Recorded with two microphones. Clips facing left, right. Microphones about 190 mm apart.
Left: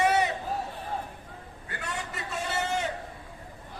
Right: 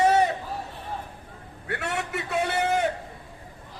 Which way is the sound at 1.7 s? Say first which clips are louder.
Right 7 dB; 70° right (ahead or behind).